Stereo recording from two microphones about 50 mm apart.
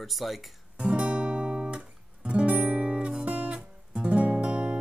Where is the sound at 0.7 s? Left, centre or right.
Right.